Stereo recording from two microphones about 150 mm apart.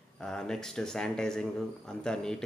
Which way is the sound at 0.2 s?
5° left (ahead or behind).